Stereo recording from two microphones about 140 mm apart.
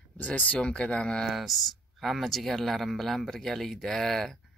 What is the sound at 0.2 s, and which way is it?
Speech, 10° left (ahead or behind).